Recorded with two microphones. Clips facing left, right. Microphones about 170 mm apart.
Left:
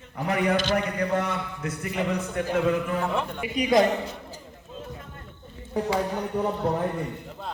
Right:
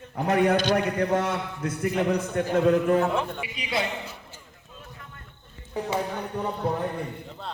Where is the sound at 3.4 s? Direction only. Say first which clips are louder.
Left 9 dB; 45° left (ahead or behind).